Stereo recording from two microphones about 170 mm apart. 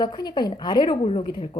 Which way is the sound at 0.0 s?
25° left (ahead or behind).